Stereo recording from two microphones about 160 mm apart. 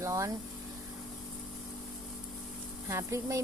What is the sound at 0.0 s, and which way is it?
Speech, 20° right (ahead or behind).